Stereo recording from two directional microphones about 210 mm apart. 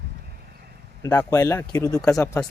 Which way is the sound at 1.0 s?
15° left (ahead or behind).